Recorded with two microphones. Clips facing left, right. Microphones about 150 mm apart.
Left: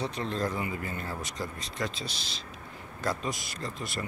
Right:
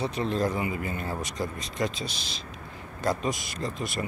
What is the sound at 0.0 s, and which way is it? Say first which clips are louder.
Speech: right 4 dB; 10° right (ahead or behind).